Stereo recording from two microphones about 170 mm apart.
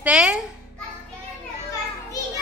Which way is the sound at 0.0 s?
5° right (ahead or behind).